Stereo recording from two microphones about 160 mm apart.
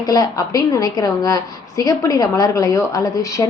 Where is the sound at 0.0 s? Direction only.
25° left (ahead or behind).